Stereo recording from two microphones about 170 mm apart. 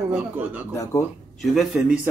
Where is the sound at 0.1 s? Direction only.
10° right (ahead or behind).